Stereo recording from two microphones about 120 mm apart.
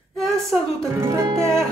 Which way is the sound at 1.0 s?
25° right (ahead or behind).